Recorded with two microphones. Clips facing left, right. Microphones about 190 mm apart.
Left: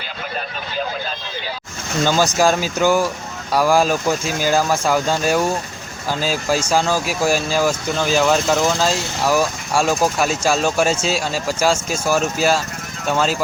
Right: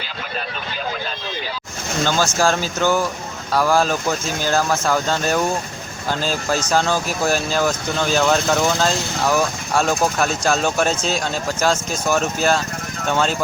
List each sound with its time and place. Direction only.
2.0 s speech: 15° left (ahead or behind)